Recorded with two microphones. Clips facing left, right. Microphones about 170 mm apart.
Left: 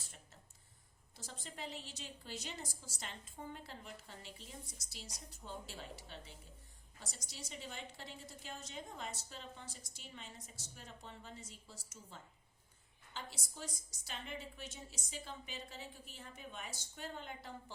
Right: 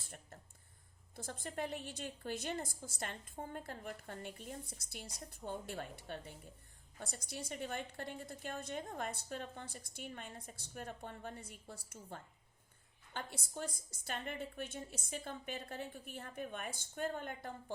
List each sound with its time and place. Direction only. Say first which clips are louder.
1.1 s a woman's voice: right 8 dB; 55° right (ahead or behind)